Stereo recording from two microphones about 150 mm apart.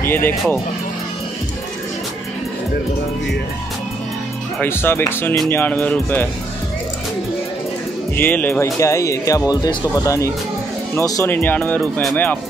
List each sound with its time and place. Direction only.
0.0 s speech: 15° left (ahead or behind)
4.6 s speech: 15° left (ahead or behind)
8.2 s speech: 10° left (ahead or behind)